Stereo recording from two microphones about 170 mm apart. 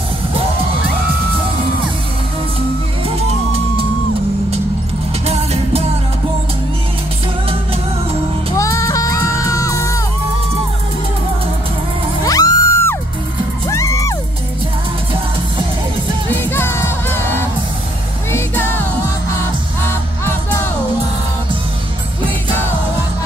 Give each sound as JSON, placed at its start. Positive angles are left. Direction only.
{"t": 5.2, "sound": "music", "side_deg": -35}
{"t": 8.5, "sound": "music", "side_deg": 20}
{"t": 12.3, "sound": "music", "side_deg": 20}
{"t": 16.3, "sound": "music", "side_deg": 15}
{"t": 18.3, "sound": "music", "side_deg": 10}